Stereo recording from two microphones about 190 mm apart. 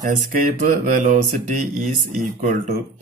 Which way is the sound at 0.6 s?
45° right (ahead or behind).